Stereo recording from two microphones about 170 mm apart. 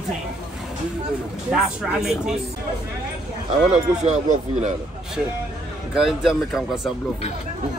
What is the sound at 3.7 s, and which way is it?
Speech, 40° right (ahead or behind).